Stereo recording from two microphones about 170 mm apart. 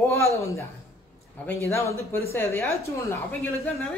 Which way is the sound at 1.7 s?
15° left (ahead or behind).